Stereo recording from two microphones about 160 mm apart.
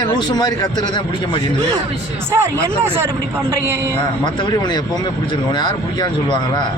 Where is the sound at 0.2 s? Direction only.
25° left (ahead or behind).